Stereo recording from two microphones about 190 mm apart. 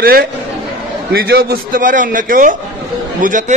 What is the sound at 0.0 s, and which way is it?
A man's voice, 50° right (ahead or behind).